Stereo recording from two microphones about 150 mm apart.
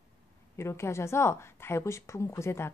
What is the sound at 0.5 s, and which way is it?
Speech, 20° left (ahead or behind).